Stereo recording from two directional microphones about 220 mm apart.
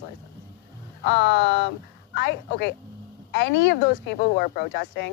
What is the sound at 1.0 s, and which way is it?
Speech, 50° left (ahead or behind).